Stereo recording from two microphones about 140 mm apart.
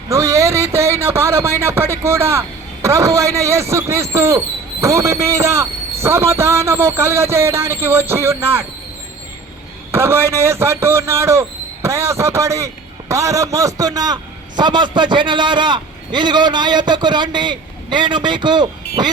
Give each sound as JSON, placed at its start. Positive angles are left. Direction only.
{"t": 0.1, "sound": "a man's voice", "side_deg": -20}
{"t": 9.9, "sound": "a man's voice", "side_deg": -15}